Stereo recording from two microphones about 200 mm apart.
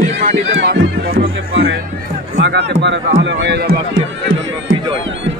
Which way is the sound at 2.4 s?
60° right (ahead or behind).